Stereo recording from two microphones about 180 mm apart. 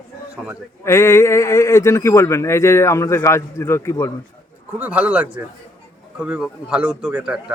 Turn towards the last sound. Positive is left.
turn(degrees=-5)  # may be behind; listen again after turning